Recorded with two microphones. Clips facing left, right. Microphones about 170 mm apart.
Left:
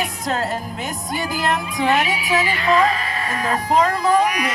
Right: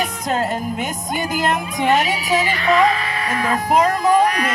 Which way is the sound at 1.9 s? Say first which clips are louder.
Right 2 dB; 40° right (ahead or behind).